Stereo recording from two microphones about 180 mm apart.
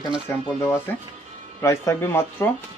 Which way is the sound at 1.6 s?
15° left (ahead or behind).